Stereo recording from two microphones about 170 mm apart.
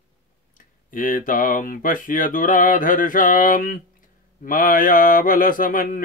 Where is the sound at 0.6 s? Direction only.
55° left (ahead or behind).